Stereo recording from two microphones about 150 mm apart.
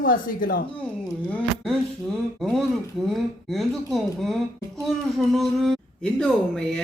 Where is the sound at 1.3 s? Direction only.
5° left (ahead or behind).